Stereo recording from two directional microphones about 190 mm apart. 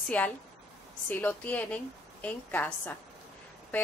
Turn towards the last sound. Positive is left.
turn(degrees=10)  # may be behind; listen again after turning